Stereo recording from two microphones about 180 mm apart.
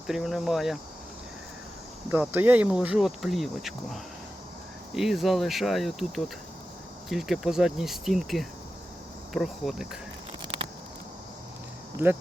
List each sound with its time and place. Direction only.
0.1 s speech: centre (ahead or behind)
2.0 s speech: 10° right (ahead or behind)